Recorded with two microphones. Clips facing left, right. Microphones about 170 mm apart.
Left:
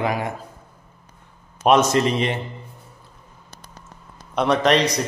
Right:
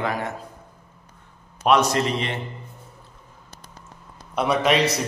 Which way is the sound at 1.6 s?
20° left (ahead or behind).